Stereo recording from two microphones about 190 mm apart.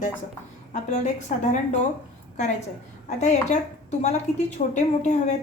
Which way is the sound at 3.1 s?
40° left (ahead or behind).